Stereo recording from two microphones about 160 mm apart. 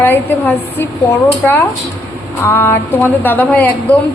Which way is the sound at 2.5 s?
15° left (ahead or behind).